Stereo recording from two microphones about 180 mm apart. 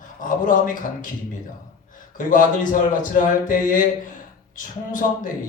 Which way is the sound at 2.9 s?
45° left (ahead or behind).